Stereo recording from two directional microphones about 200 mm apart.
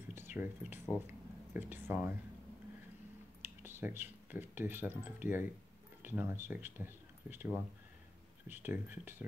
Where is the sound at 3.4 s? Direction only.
10° right (ahead or behind).